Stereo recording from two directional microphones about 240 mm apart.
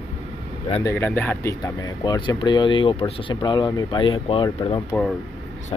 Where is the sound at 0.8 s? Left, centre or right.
Centre.